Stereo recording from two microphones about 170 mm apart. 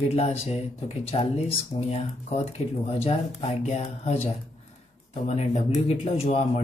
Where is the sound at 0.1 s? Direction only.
35° left (ahead or behind).